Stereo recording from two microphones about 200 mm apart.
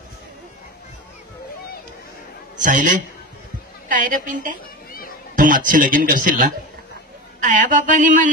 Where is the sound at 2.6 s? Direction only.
40° right (ahead or behind).